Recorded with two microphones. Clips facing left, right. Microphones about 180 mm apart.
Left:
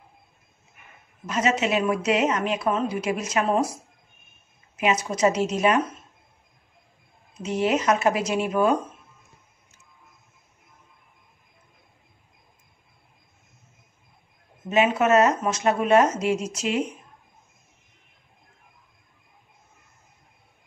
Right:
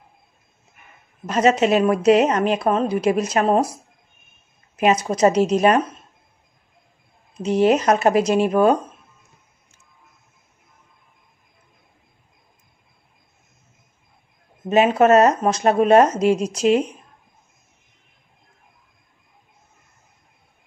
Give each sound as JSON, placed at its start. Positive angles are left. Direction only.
{"t": 1.2, "sound": "speech", "side_deg": -40}
{"t": 4.7, "sound": "speech", "side_deg": -40}
{"t": 7.4, "sound": "speech", "side_deg": -35}
{"t": 14.7, "sound": "speech", "side_deg": -40}